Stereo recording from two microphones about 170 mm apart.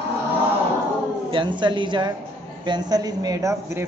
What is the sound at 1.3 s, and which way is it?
A man's voice, 30° right (ahead or behind).